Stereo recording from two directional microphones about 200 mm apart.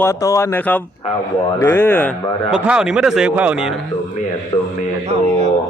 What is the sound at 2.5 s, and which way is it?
Speech, 5° right (ahead or behind).